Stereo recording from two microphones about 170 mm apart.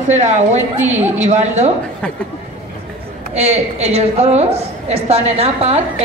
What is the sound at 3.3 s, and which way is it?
A man's voice, 40° right (ahead or behind).